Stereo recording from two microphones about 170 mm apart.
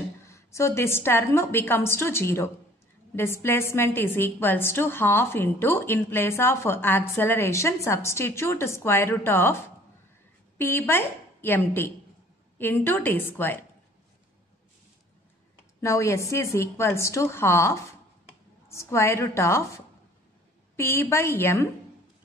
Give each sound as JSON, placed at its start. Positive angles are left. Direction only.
{"t": 0.3, "sound": "a woman's voice", "side_deg": 15}
{"t": 10.6, "sound": "a woman's voice", "side_deg": 15}
{"t": 15.8, "sound": "a woman's voice", "side_deg": 15}
{"t": 20.7, "sound": "a woman's voice", "side_deg": 15}